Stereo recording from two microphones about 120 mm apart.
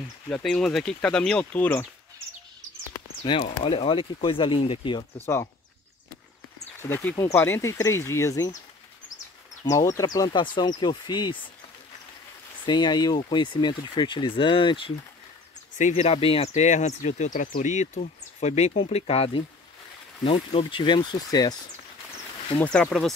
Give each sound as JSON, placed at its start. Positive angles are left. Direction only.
{"t": 0.3, "sound": "speech", "side_deg": 5}
{"t": 3.3, "sound": "speech", "side_deg": 45}
{"t": 5.2, "sound": "speech", "side_deg": 20}
{"t": 6.8, "sound": "speech", "side_deg": 15}
{"t": 9.7, "sound": "speech", "side_deg": 30}
{"t": 12.6, "sound": "speech", "side_deg": 35}
{"t": 15.8, "sound": "speech", "side_deg": 80}
{"t": 22.6, "sound": "speech", "side_deg": 10}
{"t": 22.8, "sound": "speech", "side_deg": 0}